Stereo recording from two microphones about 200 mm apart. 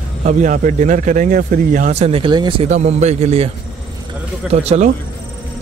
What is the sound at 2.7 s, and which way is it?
Speech, 35° right (ahead or behind).